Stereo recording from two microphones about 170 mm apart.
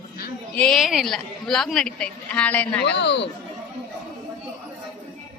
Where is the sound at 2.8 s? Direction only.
90° left.